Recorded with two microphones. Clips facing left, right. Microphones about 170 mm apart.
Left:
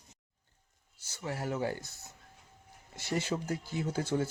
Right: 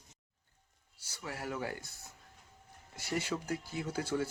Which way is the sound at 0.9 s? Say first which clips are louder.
Left 5 dB; 25° left (ahead or behind).